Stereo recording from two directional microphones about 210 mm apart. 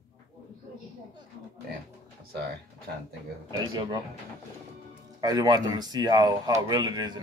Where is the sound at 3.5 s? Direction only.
20° right (ahead or behind).